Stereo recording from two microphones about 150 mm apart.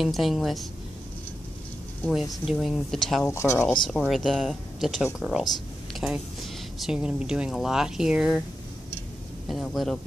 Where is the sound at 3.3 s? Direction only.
20° left (ahead or behind).